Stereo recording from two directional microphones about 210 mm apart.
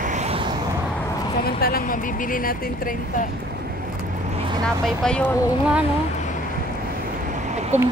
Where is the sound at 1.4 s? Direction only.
45° left (ahead or behind).